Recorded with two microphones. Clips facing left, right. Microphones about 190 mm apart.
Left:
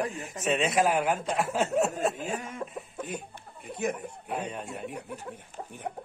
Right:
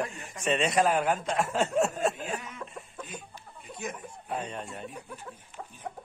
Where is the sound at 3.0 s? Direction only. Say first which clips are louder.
Left 6 dB; 60° left (ahead or behind).